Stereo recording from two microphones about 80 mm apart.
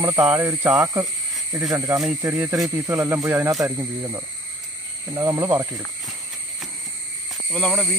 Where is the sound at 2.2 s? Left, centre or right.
Right.